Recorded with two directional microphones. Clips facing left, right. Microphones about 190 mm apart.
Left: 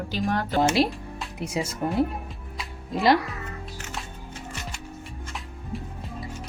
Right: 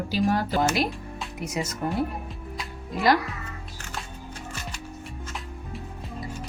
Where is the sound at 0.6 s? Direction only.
30° left (ahead or behind).